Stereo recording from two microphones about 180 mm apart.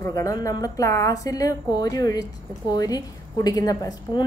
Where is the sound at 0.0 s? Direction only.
15° left (ahead or behind).